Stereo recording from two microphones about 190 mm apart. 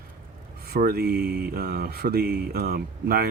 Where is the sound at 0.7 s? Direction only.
55° right (ahead or behind).